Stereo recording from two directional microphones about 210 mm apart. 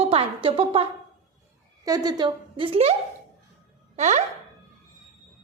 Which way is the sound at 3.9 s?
30° right (ahead or behind).